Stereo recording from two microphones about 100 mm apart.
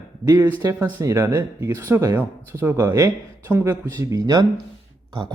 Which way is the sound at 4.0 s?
35° right (ahead or behind).